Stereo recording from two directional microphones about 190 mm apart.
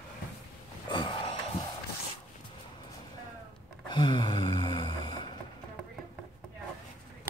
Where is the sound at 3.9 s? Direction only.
25° left (ahead or behind).